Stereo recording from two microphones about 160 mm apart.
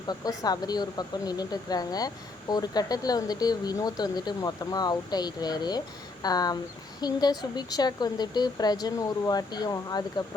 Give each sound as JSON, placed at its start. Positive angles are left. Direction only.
{"t": 0.1, "sound": "speech", "side_deg": 25}